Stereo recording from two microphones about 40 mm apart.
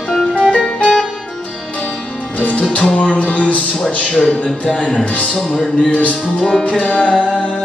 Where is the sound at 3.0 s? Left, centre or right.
Left.